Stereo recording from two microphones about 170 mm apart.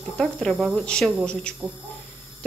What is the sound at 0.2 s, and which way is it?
A woman's voice, 5° left (ahead or behind).